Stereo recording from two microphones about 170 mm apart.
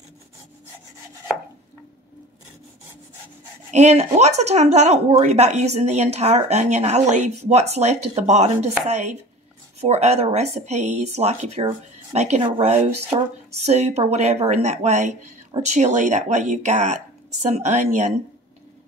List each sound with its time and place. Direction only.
3.7 s speech: 40° right (ahead or behind)